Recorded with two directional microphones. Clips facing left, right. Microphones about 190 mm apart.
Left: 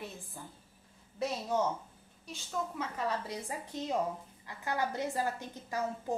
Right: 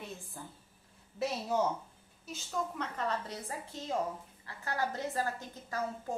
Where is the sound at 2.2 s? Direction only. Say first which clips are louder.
Right 1 dB; 5° left (ahead or behind).